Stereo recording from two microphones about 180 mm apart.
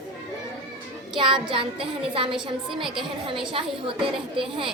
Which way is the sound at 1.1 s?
25° right (ahead or behind).